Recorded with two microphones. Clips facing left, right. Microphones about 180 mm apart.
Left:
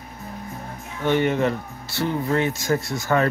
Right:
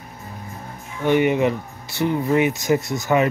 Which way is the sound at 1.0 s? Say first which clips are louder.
Right 3 dB; 15° right (ahead or behind).